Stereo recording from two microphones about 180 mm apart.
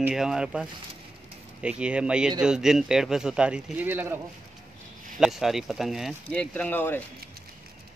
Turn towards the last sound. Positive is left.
turn(degrees=10)  # may be behind; listen again after turning